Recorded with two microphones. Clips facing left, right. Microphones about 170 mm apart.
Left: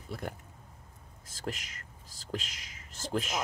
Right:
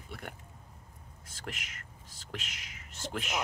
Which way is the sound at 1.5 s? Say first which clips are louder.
Left 5 dB; 35° left (ahead or behind).